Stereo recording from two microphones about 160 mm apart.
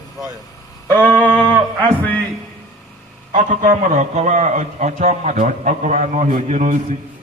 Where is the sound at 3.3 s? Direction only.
55° right (ahead or behind).